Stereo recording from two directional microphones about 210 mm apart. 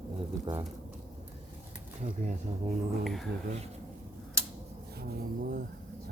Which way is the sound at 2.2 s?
35° right (ahead or behind).